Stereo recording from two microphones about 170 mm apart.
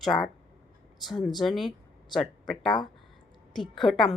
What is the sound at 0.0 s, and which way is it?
Speech, centre (ahead or behind).